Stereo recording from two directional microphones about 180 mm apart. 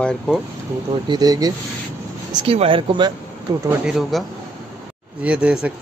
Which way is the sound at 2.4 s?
30° right (ahead or behind).